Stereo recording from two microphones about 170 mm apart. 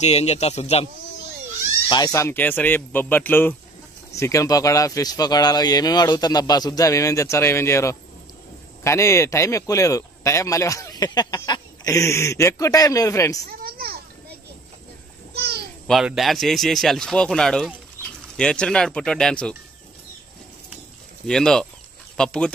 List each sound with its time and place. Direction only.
0.0 s a man's voice: 40° left (ahead or behind)
1.9 s speech: 25° left (ahead or behind)
13.5 s a child's voice: 60° right (ahead or behind)
15.3 s a sound: 70° right (ahead or behind)
15.9 s speech: centre (ahead or behind)
21.3 s speech: 5° left (ahead or behind)